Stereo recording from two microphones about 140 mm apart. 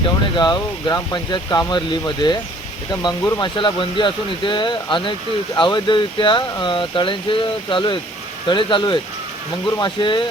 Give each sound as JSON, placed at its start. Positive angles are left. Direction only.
{"t": 0.3, "sound": "speech", "side_deg": 30}